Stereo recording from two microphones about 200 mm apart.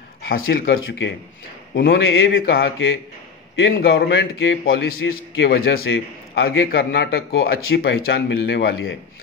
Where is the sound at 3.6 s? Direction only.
75° left (ahead or behind).